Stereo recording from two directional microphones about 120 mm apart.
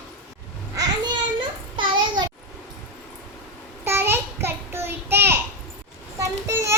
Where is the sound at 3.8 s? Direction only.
20° right (ahead or behind).